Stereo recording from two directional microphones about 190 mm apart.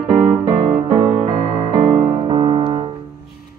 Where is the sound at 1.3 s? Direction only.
45° right (ahead or behind).